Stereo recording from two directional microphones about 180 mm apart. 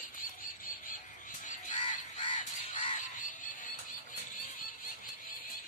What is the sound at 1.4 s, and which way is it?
Crow, 45° left (ahead or behind).